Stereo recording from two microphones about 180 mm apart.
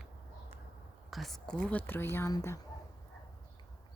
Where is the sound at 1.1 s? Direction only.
Centre (ahead or behind).